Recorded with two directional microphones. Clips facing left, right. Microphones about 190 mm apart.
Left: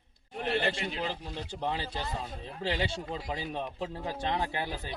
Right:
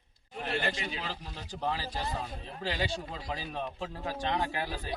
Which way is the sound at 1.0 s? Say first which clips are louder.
Left 5 dB; 25° left (ahead or behind).